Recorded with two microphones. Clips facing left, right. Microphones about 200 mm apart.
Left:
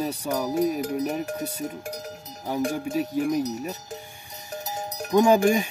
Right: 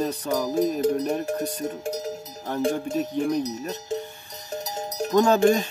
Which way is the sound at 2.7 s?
5° left (ahead or behind).